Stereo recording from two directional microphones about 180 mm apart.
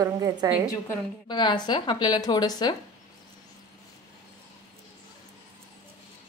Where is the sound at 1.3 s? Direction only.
25° left (ahead or behind).